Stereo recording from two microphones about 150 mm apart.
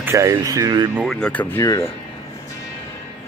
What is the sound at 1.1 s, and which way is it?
Speech, 5° left (ahead or behind).